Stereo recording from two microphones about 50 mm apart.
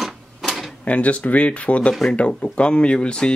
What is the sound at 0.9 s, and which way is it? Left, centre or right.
Speech, left.